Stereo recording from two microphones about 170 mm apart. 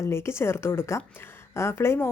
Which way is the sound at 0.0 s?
15° left (ahead or behind).